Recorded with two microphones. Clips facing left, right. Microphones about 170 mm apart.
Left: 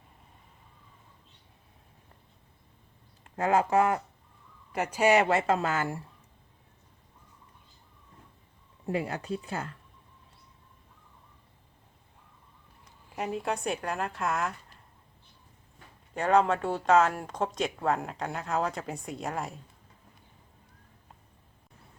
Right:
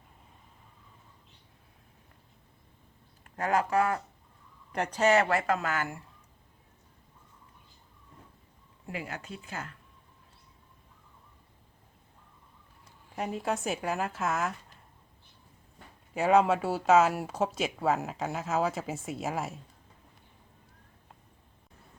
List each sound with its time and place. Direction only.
3.2 s speech: 25° left (ahead or behind)
4.7 s speech: 5° left (ahead or behind); by 6.0 s 30° left (ahead or behind)
8.9 s speech: 35° left (ahead or behind)
13.1 s speech: centre (ahead or behind)
16.1 s speech: 5° right (ahead or behind)